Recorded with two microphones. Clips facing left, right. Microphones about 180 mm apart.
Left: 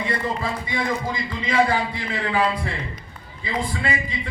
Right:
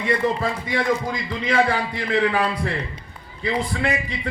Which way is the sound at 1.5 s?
65° right (ahead or behind).